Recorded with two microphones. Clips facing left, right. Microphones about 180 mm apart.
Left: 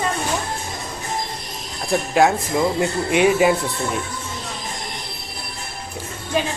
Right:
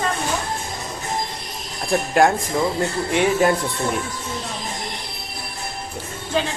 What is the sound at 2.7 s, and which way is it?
Speech, 15° left (ahead or behind).